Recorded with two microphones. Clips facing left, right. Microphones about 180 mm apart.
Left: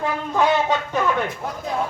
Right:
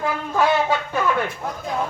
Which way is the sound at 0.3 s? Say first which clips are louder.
Even; 5° right (ahead or behind).